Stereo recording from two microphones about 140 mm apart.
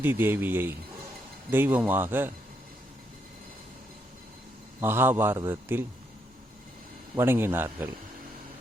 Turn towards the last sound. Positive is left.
turn(degrees=-15)  # may be behind; listen again after turning